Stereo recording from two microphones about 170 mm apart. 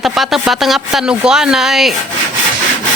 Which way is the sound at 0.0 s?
Centre (ahead or behind).